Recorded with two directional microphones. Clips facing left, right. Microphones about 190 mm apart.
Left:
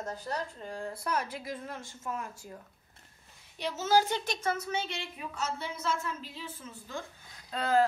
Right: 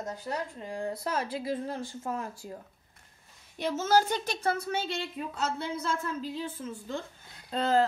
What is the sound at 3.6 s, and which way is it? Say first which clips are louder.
Speech: right 2 dB; 50° right (ahead or behind).